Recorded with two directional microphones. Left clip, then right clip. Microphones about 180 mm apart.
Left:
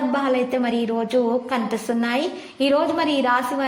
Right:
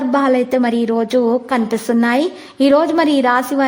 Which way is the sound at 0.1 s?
35° right (ahead or behind).